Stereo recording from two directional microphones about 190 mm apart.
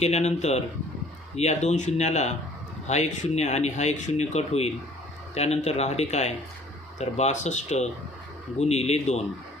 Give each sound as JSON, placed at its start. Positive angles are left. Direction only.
{"t": 0.0, "sound": "speech", "side_deg": 35}